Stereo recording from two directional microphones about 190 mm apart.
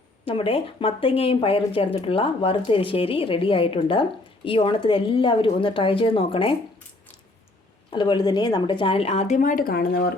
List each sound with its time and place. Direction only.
0.3 s speech: 30° left (ahead or behind)
7.9 s speech: 25° left (ahead or behind); by 10.1 s 55° left (ahead or behind)